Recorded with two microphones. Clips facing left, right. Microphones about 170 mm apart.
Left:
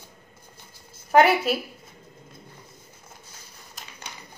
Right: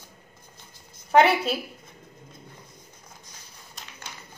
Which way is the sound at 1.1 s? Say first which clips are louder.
Left 1 dB; 5° left (ahead or behind).